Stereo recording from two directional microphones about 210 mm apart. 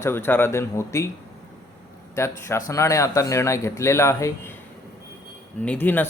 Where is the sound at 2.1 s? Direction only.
15° left (ahead or behind).